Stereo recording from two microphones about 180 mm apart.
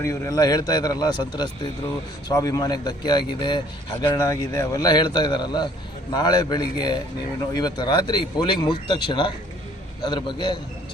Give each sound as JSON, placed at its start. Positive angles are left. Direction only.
{"t": 0.0, "sound": "a man's voice", "side_deg": 20}